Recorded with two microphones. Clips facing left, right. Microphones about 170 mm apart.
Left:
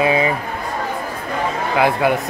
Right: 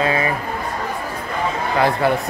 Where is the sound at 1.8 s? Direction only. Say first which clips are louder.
Left 1 dB; 5° left (ahead or behind).